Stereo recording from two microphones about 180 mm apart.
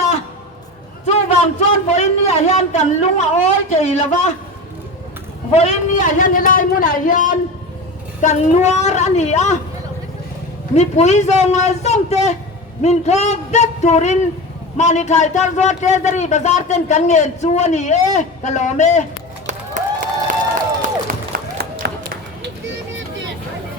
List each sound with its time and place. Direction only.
1.0 s a man's voice: 40° left (ahead or behind)
5.5 s a man's voice: 40° left (ahead or behind)
10.8 s a man's voice: 40° left (ahead or behind)
19.5 s run: 40° right (ahead or behind)
21.1 s a sound: 60° right (ahead or behind)